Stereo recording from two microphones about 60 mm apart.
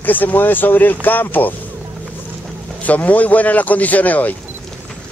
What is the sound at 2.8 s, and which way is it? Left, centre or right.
A man's voice, left.